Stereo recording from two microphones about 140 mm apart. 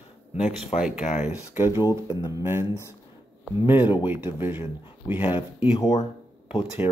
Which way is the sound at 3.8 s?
35° left (ahead or behind).